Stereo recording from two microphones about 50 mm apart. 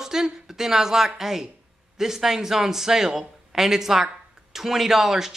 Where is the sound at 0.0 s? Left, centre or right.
Centre.